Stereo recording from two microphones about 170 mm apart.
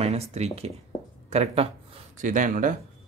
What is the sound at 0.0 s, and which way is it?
Speech, 40° right (ahead or behind).